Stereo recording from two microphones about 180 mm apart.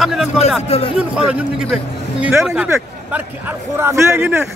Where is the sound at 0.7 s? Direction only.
35° left (ahead or behind).